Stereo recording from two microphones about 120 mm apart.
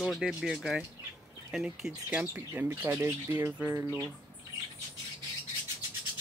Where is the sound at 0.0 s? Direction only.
5° right (ahead or behind).